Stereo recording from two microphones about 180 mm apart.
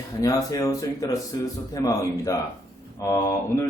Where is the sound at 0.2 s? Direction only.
20° left (ahead or behind).